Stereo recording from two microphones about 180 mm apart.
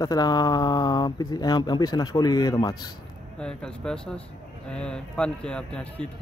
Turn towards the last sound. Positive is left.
turn(degrees=5)  # may be behind; listen again after turning